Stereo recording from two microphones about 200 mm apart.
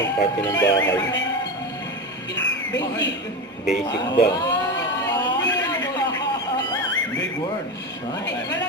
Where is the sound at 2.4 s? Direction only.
60° left (ahead or behind).